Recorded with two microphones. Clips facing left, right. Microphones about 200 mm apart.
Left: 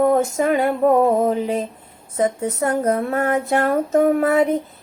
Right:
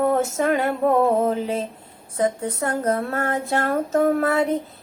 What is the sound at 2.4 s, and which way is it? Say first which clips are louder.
Music: left 4 dB; 10° left (ahead or behind).